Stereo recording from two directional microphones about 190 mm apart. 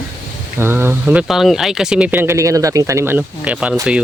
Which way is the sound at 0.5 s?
10° right (ahead or behind).